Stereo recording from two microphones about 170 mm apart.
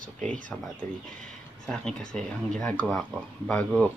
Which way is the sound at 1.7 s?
5° left (ahead or behind).